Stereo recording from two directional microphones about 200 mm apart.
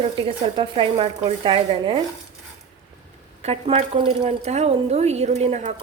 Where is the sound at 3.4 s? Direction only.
35° right (ahead or behind).